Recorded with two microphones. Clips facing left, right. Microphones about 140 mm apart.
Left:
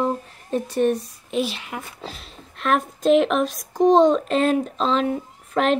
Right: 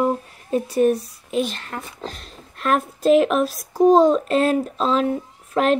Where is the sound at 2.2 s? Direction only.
Centre (ahead or behind).